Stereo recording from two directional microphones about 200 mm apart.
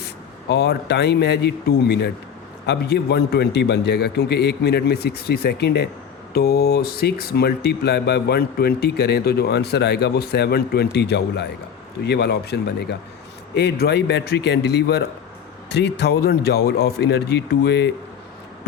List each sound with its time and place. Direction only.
0.0 s a man's voice: 55° left (ahead or behind)